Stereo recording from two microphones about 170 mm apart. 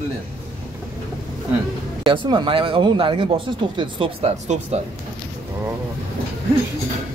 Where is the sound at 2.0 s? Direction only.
30° right (ahead or behind).